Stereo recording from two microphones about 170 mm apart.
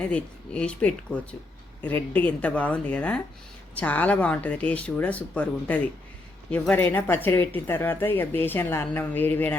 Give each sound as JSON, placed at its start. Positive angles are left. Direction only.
{"t": 0.0, "sound": "speech", "side_deg": 5}